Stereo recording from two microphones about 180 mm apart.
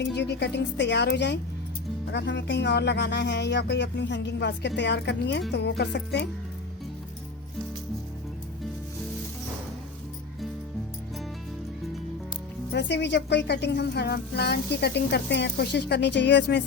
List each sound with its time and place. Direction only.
0.0 s a woman's voice: 70° left (ahead or behind)
12.7 s a woman's voice: 75° left (ahead or behind)